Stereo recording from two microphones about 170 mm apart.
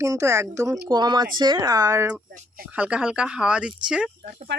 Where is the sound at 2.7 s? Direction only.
5° right (ahead or behind).